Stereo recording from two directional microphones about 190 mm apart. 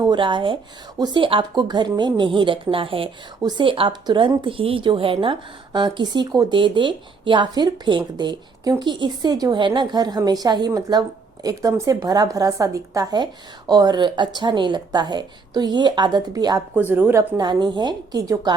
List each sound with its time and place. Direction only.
0.0 s speech: 25° right (ahead or behind)